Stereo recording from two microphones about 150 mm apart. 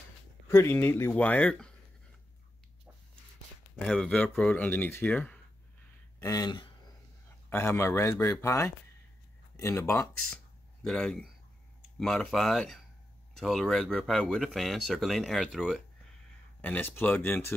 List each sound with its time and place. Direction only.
0.5 s speech: 15° left (ahead or behind)
3.7 s speech: 5° left (ahead or behind)
6.1 s speech: 20° left (ahead or behind)
7.4 s speech: 15° left (ahead or behind)
10.9 s speech: 5° left (ahead or behind)
16.6 s speech: 10° left (ahead or behind)